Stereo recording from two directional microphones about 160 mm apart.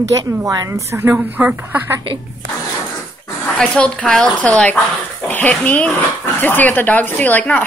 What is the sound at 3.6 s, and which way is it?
A woman's voice, 5° left (ahead or behind).